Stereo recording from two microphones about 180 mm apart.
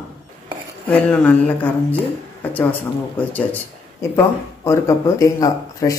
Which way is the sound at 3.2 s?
10° left (ahead or behind).